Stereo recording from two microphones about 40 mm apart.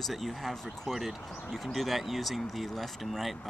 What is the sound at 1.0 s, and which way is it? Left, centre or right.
Speech, centre.